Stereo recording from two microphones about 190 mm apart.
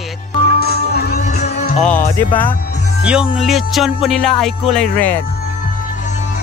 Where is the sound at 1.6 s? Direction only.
40° left (ahead or behind).